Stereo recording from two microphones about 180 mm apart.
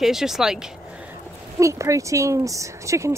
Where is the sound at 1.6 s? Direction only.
15° right (ahead or behind).